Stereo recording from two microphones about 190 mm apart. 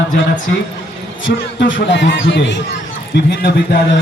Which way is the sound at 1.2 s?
75° left (ahead or behind).